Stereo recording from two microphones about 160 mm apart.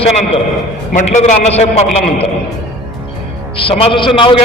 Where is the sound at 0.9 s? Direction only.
45° left (ahead or behind).